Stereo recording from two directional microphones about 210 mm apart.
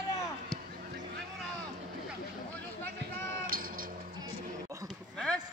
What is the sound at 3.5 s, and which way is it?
Cat, 40° right (ahead or behind).